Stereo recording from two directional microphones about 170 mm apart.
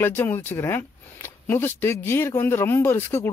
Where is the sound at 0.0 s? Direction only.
10° left (ahead or behind).